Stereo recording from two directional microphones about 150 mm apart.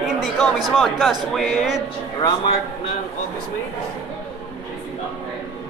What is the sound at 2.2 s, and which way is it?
Speech, 25° left (ahead or behind).